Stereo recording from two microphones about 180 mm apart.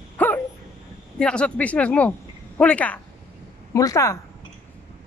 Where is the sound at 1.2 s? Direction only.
5° left (ahead or behind).